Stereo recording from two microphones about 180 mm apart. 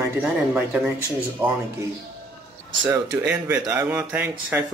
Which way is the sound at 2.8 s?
15° right (ahead or behind).